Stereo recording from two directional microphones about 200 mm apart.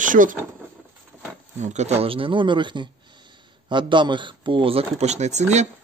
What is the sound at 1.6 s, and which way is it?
Speech, 35° right (ahead or behind).